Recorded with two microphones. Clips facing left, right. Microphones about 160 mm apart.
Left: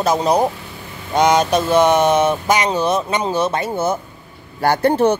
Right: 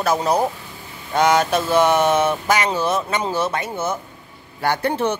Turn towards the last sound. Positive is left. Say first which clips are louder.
# left 6 dB
turn(degrees=40)  # may be behind; listen again after turning